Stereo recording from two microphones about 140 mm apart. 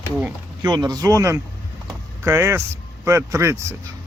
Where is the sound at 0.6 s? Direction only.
30° right (ahead or behind).